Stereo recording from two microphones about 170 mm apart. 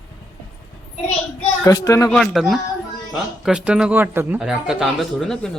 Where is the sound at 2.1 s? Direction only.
Centre (ahead or behind).